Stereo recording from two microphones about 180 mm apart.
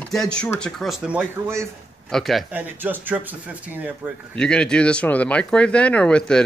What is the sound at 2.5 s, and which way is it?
Speech, 10° right (ahead or behind).